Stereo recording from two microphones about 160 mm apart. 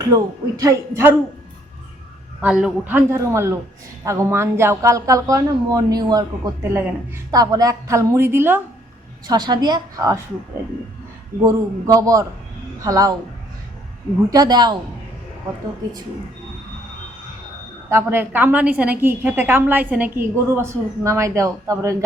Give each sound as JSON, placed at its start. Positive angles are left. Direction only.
{"t": 0.0, "sound": "a woman's voice", "side_deg": -25}
{"t": 2.4, "sound": "a woman's voice", "side_deg": -5}
{"t": 9.2, "sound": "a woman's voice", "side_deg": -25}
{"t": 11.4, "sound": "a woman's voice", "side_deg": -20}
{"t": 14.3, "sound": "a woman's voice", "side_deg": -25}
{"t": 17.8, "sound": "a woman's voice", "side_deg": -15}